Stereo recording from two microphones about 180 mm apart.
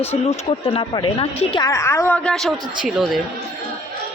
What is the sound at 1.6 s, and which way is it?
A woman's voice, 15° left (ahead or behind).